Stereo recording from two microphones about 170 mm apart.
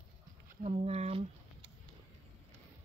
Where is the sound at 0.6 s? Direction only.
40° right (ahead or behind).